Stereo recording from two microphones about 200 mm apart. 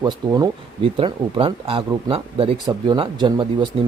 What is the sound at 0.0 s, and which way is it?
Speech, 20° right (ahead or behind).